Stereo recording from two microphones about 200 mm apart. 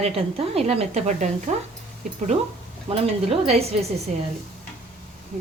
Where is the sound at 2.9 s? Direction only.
30° right (ahead or behind).